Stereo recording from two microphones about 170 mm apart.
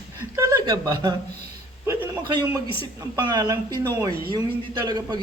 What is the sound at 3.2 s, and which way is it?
Speech, 25° right (ahead or behind).